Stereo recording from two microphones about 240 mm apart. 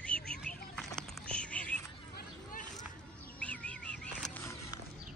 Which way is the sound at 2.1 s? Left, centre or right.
Left.